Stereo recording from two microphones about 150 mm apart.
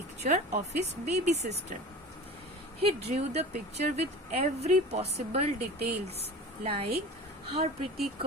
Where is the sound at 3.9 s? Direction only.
45° right (ahead or behind).